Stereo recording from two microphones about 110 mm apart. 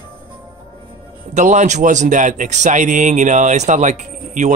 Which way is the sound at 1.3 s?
90° right.